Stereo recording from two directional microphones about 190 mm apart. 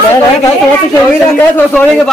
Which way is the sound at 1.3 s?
5° left (ahead or behind).